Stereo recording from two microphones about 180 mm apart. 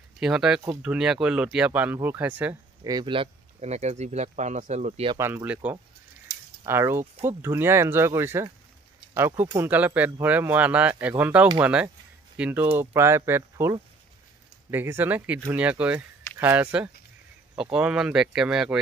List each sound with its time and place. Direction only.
0.2 s speech: 5° right (ahead or behind)
2.8 s speech: 25° right (ahead or behind)
5.1 s speech: 10° right (ahead or behind)